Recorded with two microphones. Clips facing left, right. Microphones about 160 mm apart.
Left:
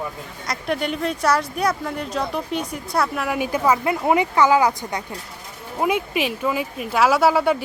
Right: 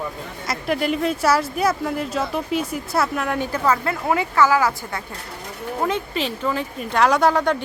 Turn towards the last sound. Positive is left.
turn(degrees=5)  # may be behind; listen again after turning